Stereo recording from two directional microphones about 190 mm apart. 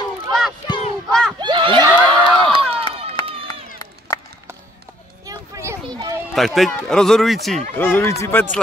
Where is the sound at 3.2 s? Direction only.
25° left (ahead or behind).